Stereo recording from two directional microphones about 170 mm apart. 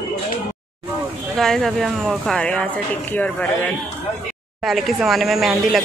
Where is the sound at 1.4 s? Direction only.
Centre (ahead or behind).